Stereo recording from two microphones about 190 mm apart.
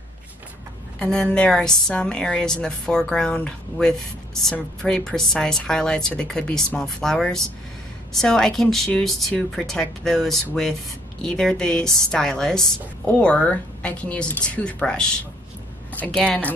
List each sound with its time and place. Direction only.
0.9 s a woman's voice: 5° left (ahead or behind)